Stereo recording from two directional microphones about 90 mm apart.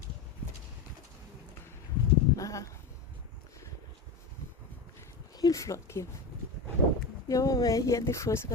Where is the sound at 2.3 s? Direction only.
40° left (ahead or behind).